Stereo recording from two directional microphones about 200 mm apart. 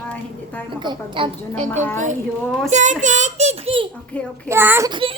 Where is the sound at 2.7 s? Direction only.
35° right (ahead or behind).